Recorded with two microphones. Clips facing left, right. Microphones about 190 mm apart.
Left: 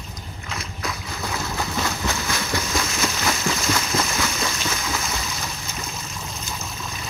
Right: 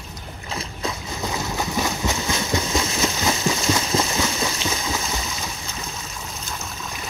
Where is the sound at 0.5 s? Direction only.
30° right (ahead or behind).